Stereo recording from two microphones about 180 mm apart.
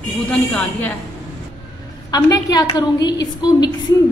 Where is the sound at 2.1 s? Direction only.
20° left (ahead or behind).